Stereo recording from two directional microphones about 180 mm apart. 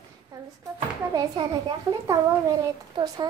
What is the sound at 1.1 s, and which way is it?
Speech, 20° right (ahead or behind).